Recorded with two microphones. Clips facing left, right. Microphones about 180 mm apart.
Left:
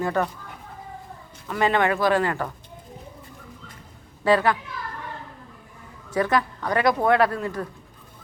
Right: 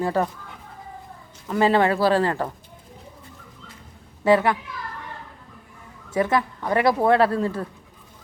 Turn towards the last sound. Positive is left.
turn(degrees=-30)  # may be behind; listen again after turning